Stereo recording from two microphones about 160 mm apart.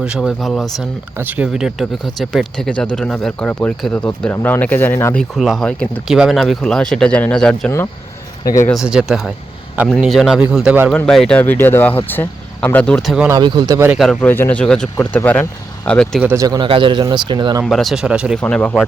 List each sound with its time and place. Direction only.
0.0 s speech: 5° right (ahead or behind); by 5.1 s 15° left (ahead or behind)
5.1 s speech: centre (ahead or behind)
8.4 s speech: 20° left (ahead or behind)
8.8 s speech: 5° right (ahead or behind)
13.2 s speech: 25° right (ahead or behind)
13.9 s speech: centre (ahead or behind)
16.2 s speech: 20° right (ahead or behind)
17.6 s speech: centre (ahead or behind)
18.3 s speech: 5° left (ahead or behind)